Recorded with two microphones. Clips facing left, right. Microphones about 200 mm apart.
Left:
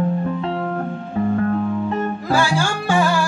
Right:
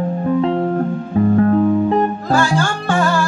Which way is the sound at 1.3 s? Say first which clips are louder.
Right 7 dB; 40° right (ahead or behind).